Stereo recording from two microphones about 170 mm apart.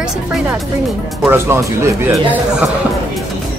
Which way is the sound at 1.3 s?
15° right (ahead or behind).